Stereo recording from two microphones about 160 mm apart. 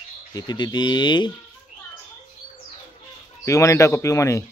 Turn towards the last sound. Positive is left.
turn(degrees=20)  # may be behind; listen again after turning